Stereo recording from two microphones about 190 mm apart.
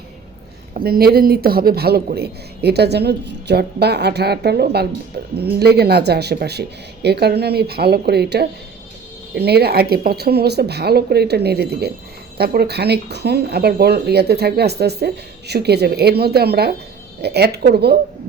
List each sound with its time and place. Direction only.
0.7 s speech: 50° right (ahead or behind)